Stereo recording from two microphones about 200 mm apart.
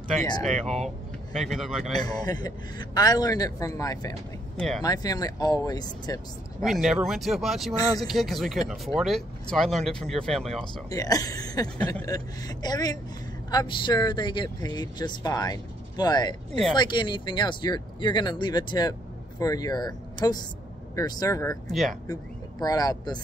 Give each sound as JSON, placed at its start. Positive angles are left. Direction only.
{"t": 0.4, "sound": "speech", "side_deg": 0}
{"t": 2.0, "sound": "speech", "side_deg": 20}
{"t": 4.6, "sound": "speech", "side_deg": 0}
{"t": 4.8, "sound": "speech", "side_deg": 20}
{"t": 6.6, "sound": "speech", "side_deg": 0}
{"t": 7.7, "sound": "speech", "side_deg": 20}
{"t": 8.1, "sound": "speech", "side_deg": 0}
{"t": 10.9, "sound": "speech", "side_deg": 20}
{"t": 21.6, "sound": "speech", "side_deg": 0}
{"t": 22.0, "sound": "speech", "side_deg": 20}